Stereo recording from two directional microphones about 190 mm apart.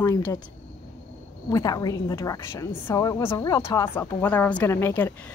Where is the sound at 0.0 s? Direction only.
15° left (ahead or behind).